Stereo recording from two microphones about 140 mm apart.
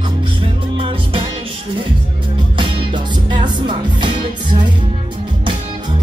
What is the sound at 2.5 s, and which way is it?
Music, 35° right (ahead or behind).